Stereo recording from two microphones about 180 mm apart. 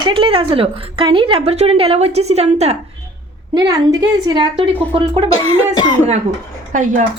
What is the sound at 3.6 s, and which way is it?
A woman's voice, 20° right (ahead or behind).